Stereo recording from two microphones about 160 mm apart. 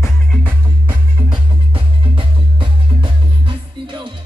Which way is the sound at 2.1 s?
30° right (ahead or behind).